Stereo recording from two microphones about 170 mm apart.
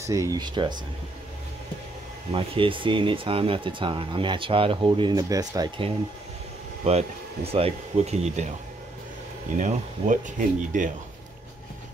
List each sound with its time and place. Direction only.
0.0 s speech: 20° right (ahead or behind)
2.3 s speech: 30° right (ahead or behind)
6.8 s speech: 40° right (ahead or behind)
9.6 s speech: 45° right (ahead or behind)